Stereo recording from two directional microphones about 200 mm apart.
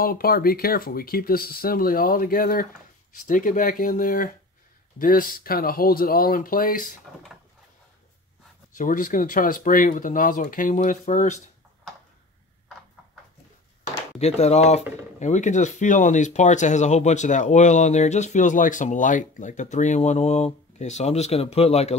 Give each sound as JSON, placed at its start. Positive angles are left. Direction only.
{"t": 0.0, "sound": "speech", "side_deg": 45}
{"t": 8.7, "sound": "speech", "side_deg": 40}
{"t": 14.1, "sound": "speech", "side_deg": 35}